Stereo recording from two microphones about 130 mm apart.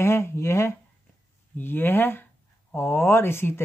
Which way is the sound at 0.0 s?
20° left (ahead or behind).